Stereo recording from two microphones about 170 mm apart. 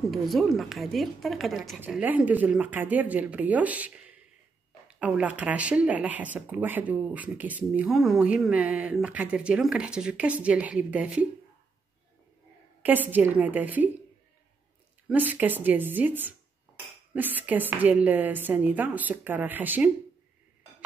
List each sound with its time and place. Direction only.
0.1 s a woman's voice: centre (ahead or behind)
12.8 s speech: 10° right (ahead or behind)
15.0 s speech: 10° right (ahead or behind)